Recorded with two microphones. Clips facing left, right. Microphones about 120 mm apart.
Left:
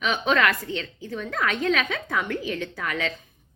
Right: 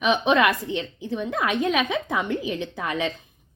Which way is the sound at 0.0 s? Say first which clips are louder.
Right 3 dB; 20° right (ahead or behind).